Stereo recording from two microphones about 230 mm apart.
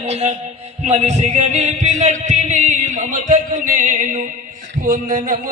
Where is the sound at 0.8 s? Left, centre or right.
Right.